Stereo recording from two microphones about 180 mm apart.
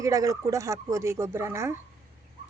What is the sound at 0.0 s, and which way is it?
Speech, 20° right (ahead or behind).